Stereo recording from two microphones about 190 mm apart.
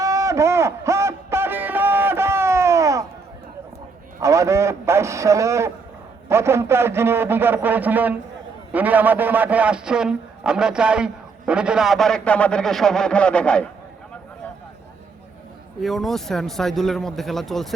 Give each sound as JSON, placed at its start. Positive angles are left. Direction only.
{"t": 0.0, "sound": "a sound", "side_deg": -15}
{"t": 4.2, "sound": "a man's voice", "side_deg": -15}
{"t": 15.8, "sound": "a man's voice", "side_deg": 0}